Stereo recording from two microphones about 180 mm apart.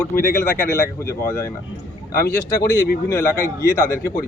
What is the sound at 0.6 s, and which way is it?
Speech, 15° left (ahead or behind).